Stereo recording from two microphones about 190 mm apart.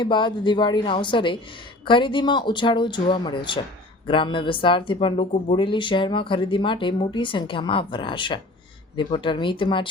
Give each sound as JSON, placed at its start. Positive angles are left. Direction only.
{"t": 0.0, "sound": "speech", "side_deg": 25}